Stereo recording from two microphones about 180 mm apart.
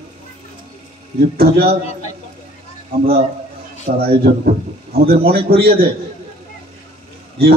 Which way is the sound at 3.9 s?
60° right (ahead or behind).